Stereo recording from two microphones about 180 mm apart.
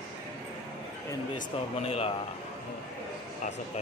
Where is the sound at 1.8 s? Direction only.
35° left (ahead or behind).